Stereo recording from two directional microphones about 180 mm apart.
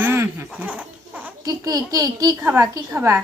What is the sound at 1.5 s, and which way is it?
A child's voice, 20° right (ahead or behind).